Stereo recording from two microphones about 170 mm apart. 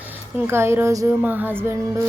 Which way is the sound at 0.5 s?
15° right (ahead or behind).